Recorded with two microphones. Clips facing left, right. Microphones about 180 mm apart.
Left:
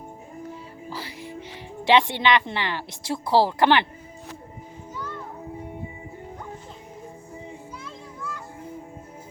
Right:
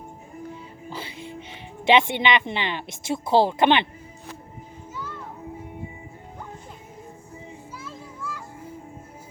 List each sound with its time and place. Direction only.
0.9 s music: 25° right (ahead or behind)
1.9 s a woman's voice: 20° right (ahead or behind)
7.9 s children playing: 5° right (ahead or behind)